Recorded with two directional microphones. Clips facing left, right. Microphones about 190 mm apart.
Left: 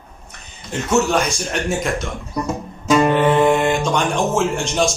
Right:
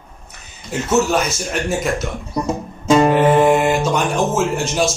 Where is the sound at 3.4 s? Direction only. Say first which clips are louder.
Right 1 dB; 5° right (ahead or behind).